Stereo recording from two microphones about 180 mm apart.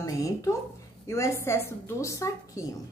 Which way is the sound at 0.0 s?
20° left (ahead or behind).